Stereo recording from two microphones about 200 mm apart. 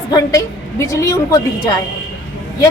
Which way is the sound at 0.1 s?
15° left (ahead or behind).